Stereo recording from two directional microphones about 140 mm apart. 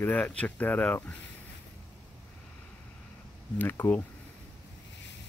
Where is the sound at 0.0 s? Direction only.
10° left (ahead or behind).